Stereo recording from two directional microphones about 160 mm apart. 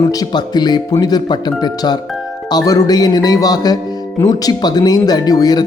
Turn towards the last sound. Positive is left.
turn(degrees=25)  # may be behind; listen again after turning